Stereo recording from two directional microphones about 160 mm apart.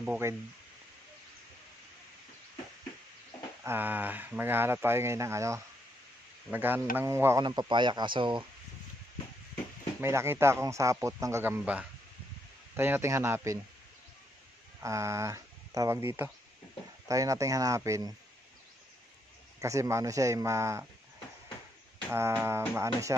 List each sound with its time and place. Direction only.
0.0 s speech: 10° right (ahead or behind)
3.6 s speech: 10° right (ahead or behind)
7.4 s speech: 25° right (ahead or behind)
9.9 s speech: 15° right (ahead or behind)
14.8 s speech: 20° right (ahead or behind)
19.6 s speech: 20° right (ahead or behind)
22.1 s speech: 15° right (ahead or behind)